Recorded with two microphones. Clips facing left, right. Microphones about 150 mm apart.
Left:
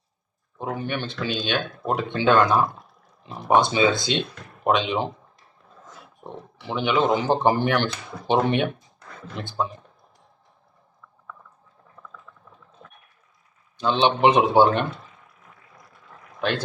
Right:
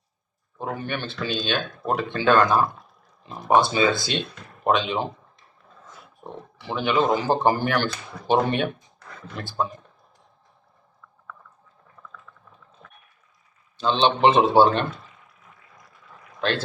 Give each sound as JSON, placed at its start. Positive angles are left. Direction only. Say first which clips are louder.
{"t": 0.6, "sound": "speech", "louder": "left 1 dB", "side_deg": 15}
{"t": 6.7, "sound": "speech", "louder": "even", "side_deg": 20}
{"t": 13.7, "sound": "speech", "louder": "even", "side_deg": 15}